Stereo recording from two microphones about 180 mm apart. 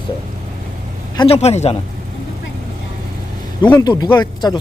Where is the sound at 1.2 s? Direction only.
35° left (ahead or behind).